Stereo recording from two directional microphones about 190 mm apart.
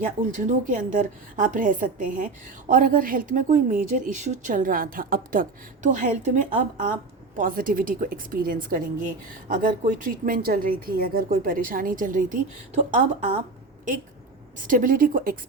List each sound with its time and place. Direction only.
0.0 s a woman's voice: 45° right (ahead or behind)
14.6 s a woman's voice: 45° right (ahead or behind)